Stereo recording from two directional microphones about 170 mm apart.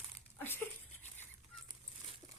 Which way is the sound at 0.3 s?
10° left (ahead or behind).